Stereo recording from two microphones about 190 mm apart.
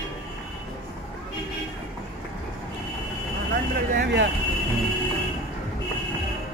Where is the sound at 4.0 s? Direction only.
65° right (ahead or behind).